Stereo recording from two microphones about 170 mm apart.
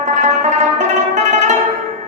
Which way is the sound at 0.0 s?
45° right (ahead or behind).